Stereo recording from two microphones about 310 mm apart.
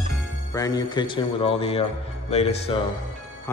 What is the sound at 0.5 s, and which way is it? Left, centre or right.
Speech, centre.